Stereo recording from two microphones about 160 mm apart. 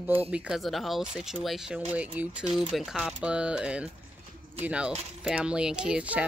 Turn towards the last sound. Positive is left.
turn(degrees=-5)  # may be behind; listen again after turning